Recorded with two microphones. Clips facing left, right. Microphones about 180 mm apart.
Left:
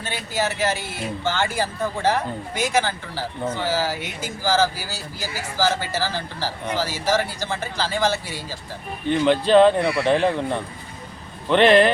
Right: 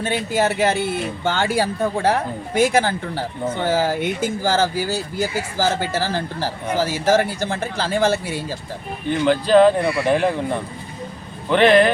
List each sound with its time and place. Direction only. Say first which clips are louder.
0.0 s speech: right 6 dB; 55° right (ahead or behind)
9.0 s speech: even; centre (ahead or behind)